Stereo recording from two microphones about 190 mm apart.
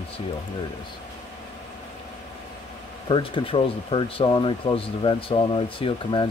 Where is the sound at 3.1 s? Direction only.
25° left (ahead or behind).